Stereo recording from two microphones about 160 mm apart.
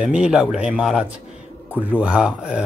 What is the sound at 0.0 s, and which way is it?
Speech, 5° right (ahead or behind).